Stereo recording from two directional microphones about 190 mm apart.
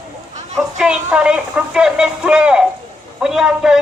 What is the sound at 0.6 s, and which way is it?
A man's voice, 5° right (ahead or behind).